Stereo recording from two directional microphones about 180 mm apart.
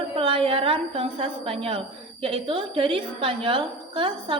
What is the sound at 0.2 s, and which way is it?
A woman's voice, 30° right (ahead or behind).